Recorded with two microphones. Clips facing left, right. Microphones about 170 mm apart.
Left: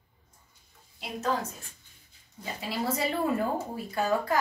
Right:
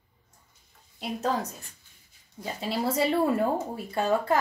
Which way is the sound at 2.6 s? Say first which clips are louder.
Right 4 dB; 30° right (ahead or behind).